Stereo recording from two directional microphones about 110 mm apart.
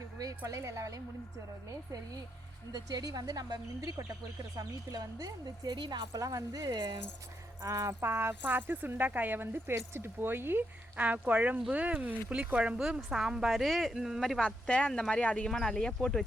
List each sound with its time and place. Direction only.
0.2 s speech: 35° right (ahead or behind)
2.7 s speech: 35° right (ahead or behind)
7.6 s a woman's voice: 30° right (ahead or behind); by 16.2 s 5° left (ahead or behind)